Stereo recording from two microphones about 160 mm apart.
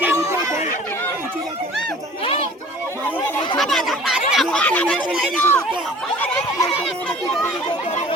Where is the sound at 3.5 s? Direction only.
Centre (ahead or behind).